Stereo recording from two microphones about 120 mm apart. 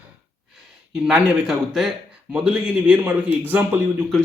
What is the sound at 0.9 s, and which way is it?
A man's voice, 5° right (ahead or behind).